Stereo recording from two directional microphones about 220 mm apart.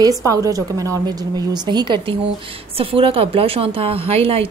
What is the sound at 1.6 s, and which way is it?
A woman's voice, 20° right (ahead or behind).